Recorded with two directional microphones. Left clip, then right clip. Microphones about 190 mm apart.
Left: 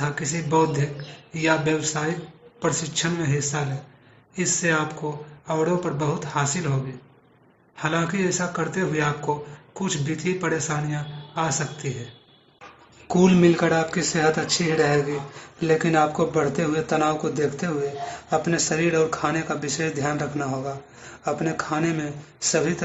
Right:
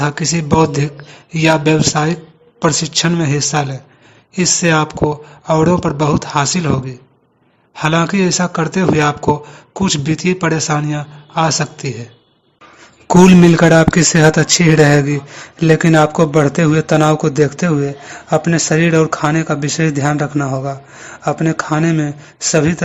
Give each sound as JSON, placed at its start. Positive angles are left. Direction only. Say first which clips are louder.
{"t": 0.0, "sound": "a man's voice", "louder": "right 10 dB", "side_deg": -50}
{"t": 7.8, "sound": "a man's voice", "louder": "right 10 dB", "side_deg": -45}
{"t": 13.1, "sound": "a man's voice", "louder": "right 9 dB", "side_deg": -50}